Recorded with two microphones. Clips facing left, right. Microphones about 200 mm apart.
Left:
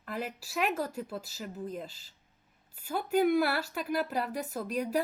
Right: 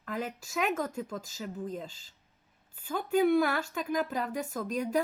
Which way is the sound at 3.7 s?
10° left (ahead or behind).